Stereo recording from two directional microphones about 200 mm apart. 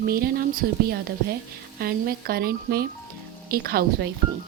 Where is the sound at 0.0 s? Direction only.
45° right (ahead or behind).